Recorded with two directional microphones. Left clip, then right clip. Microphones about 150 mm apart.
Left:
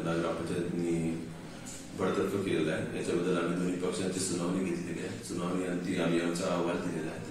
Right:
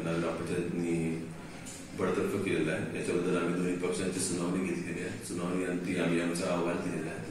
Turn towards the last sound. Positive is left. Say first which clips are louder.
# even
turn(degrees=20)  # may be behind; listen again after turning